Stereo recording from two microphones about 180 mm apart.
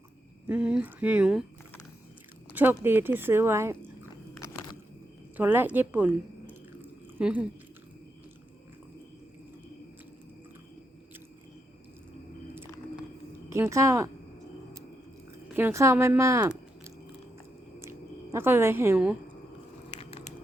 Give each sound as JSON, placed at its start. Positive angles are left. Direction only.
{"t": 0.4, "sound": "speech", "side_deg": -5}
{"t": 2.6, "sound": "speech", "side_deg": -10}
{"t": 5.4, "sound": "speech", "side_deg": -10}
{"t": 13.5, "sound": "speech", "side_deg": -15}
{"t": 15.5, "sound": "speech", "side_deg": -15}
{"t": 17.7, "sound": "a sound", "side_deg": -15}
{"t": 19.9, "sound": "biting", "side_deg": 35}